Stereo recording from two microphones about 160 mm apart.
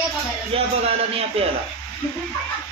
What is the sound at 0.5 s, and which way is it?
A man's voice, 35° right (ahead or behind).